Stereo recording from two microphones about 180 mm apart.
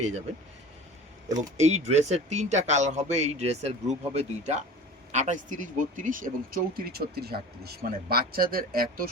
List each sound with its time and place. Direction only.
1.5 s a man's voice: 40° right (ahead or behind)